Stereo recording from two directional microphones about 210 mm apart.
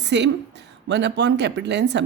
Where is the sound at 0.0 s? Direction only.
55° right (ahead or behind).